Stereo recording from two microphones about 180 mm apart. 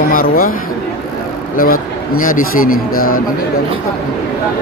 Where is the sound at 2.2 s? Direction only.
50° left (ahead or behind).